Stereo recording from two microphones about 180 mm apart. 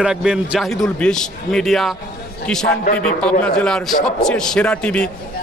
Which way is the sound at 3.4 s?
5° left (ahead or behind).